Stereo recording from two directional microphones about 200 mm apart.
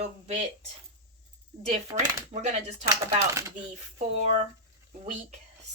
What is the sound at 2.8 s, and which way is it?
Speech, 15° right (ahead or behind).